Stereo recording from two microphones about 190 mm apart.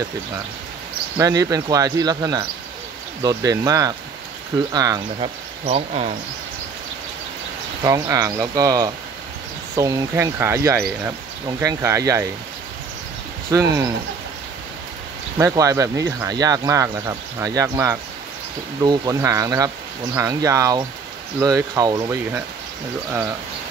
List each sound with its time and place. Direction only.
1.1 s cricket: 20° right (ahead or behind)
5.7 s speech: 35° right (ahead or behind)
7.8 s cricket: 20° right (ahead or behind)
9.8 s speech: 20° right (ahead or behind)
13.5 s speech: 15° right (ahead or behind)
15.3 s speech: 15° right (ahead or behind)